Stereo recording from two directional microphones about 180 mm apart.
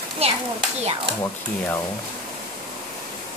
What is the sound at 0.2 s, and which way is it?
Speech, 35° right (ahead or behind).